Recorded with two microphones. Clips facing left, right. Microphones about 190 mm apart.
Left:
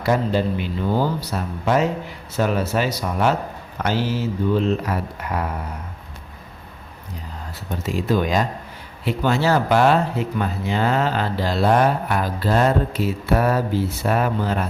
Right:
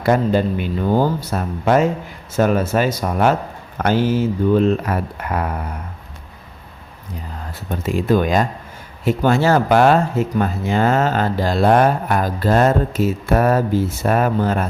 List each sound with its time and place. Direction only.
0.0 s speech: 50° right (ahead or behind)
7.7 s speech: 55° right (ahead or behind)